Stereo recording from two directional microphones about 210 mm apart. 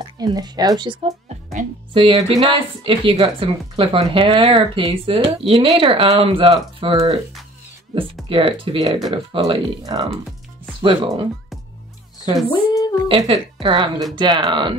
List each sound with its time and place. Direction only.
0.2 s speech: 20° right (ahead or behind)
12.4 s speech: 20° left (ahead or behind)
13.1 s speech: 25° right (ahead or behind)